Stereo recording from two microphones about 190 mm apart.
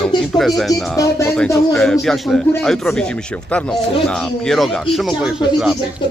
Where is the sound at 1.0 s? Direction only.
15° left (ahead or behind).